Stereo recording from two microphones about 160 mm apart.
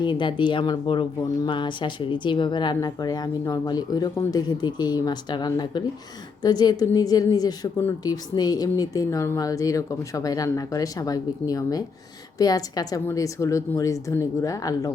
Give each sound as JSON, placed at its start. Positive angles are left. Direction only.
{"t": 0.0, "sound": "speech", "side_deg": 30}